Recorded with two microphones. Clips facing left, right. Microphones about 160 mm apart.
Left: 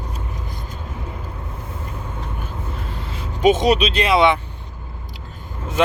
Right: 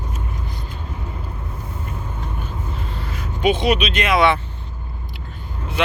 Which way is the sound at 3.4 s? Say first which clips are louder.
Left 3 dB; 40° left (ahead or behind).